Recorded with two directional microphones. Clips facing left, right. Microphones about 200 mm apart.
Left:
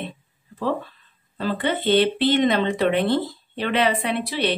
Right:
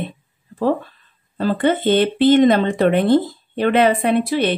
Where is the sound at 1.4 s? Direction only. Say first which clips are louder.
Right 6 dB; 45° right (ahead or behind).